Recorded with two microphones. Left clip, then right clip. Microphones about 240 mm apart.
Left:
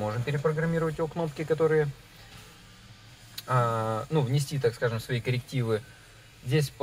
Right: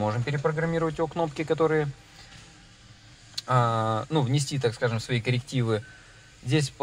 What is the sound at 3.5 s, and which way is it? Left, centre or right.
Speech, right.